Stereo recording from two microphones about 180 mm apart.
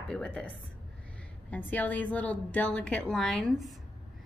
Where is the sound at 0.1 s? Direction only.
5° left (ahead or behind).